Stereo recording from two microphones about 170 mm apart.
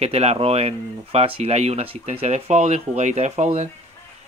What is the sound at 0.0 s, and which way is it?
Speech, 40° right (ahead or behind).